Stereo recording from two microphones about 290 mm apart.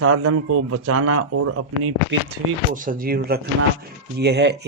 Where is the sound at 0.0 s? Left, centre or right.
Right.